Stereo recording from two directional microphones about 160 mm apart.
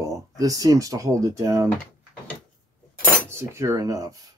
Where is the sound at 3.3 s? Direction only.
15° right (ahead or behind).